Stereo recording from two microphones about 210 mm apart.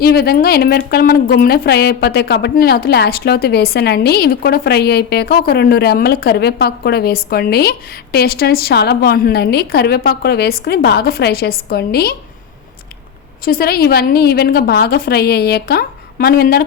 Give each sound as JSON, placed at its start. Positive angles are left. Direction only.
{"t": 0.0, "sound": "speech", "side_deg": 45}
{"t": 13.4, "sound": "speech", "side_deg": 45}